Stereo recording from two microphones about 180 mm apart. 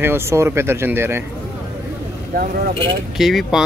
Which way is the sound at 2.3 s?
55° right (ahead or behind).